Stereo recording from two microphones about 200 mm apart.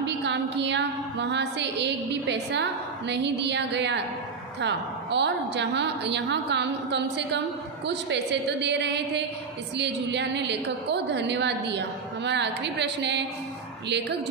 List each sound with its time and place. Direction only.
0.0 s a woman's voice: 60° right (ahead or behind)